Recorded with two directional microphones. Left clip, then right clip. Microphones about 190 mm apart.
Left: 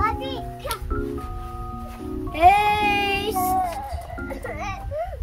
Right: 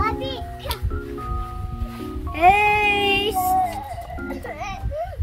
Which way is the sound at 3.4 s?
Centre (ahead or behind).